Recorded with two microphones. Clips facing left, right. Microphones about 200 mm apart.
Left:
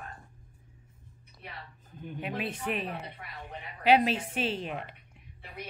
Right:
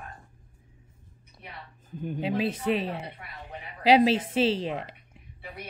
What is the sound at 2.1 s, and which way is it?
Speech, 30° right (ahead or behind).